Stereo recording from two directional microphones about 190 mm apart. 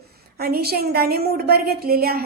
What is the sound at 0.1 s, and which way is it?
A woman's voice, 55° right (ahead or behind).